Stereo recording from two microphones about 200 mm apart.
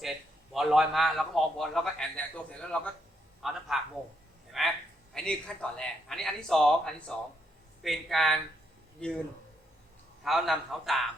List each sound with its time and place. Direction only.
0.0 s a man's voice: centre (ahead or behind)
10.2 s speech: centre (ahead or behind)